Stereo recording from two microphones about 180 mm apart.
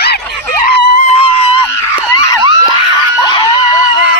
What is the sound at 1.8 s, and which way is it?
Screaming, 15° left (ahead or behind).